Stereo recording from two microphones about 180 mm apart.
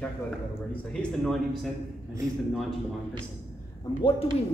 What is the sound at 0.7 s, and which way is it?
Speech, 5° left (ahead or behind).